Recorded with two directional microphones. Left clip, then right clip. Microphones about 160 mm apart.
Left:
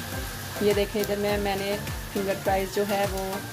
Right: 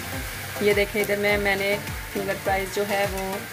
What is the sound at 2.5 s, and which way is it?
Speech, 15° left (ahead or behind).